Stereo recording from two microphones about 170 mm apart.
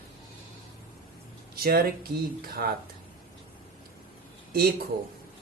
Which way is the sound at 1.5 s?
60° right (ahead or behind).